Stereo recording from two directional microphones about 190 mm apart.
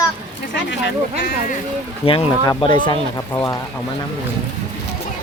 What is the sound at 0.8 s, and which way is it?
Speech, 60° left (ahead or behind).